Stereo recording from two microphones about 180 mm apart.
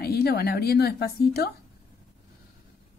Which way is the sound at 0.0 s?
60° left (ahead or behind).